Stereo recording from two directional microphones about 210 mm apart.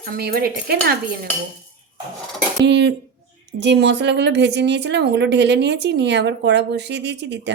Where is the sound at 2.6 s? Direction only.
55° right (ahead or behind).